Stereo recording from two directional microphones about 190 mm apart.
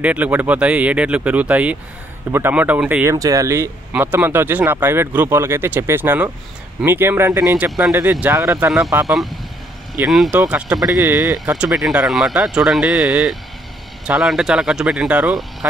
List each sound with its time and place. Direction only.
0.0 s speech: 10° right (ahead or behind)
8.6 s speech: centre (ahead or behind)
10.8 s speech: 20° right (ahead or behind)
11.4 s speech: 5° right (ahead or behind)